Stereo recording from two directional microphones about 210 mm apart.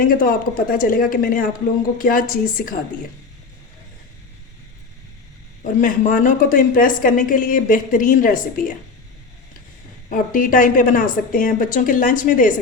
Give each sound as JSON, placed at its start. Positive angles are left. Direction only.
{"t": 0.0, "sound": "a woman's voice", "side_deg": 40}
{"t": 5.8, "sound": "a woman's voice", "side_deg": 40}
{"t": 10.1, "sound": "a woman's voice", "side_deg": 40}